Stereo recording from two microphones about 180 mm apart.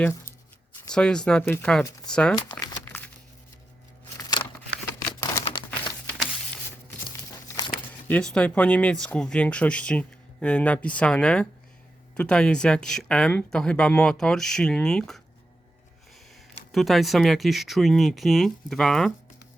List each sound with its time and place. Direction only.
0.0 s speech: 15° left (ahead or behind)
2.3 s crumpling: 20° left (ahead or behind)
4.4 s a sound: 25° left (ahead or behind)
5.2 s crumpling: 25° left (ahead or behind)
8.0 s speech: 5° left (ahead or behind)
16.3 s speech: centre (ahead or behind)